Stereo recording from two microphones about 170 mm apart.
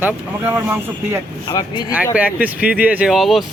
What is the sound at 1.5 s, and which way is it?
Speech, 25° left (ahead or behind).